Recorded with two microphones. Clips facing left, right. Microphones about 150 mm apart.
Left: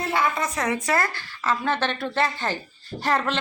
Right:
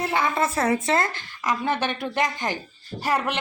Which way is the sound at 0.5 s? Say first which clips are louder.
Right 2 dB; 30° right (ahead or behind).